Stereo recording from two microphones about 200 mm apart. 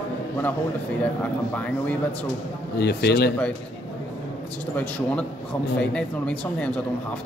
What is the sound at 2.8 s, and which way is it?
Speech, 55° left (ahead or behind).